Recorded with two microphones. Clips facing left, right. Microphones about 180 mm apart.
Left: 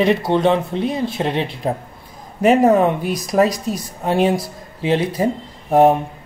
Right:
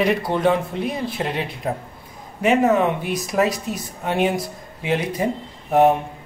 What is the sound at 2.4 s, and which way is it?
Speech, 40° left (ahead or behind).